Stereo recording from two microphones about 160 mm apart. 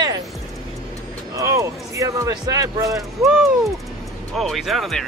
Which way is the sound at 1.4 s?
20° right (ahead or behind).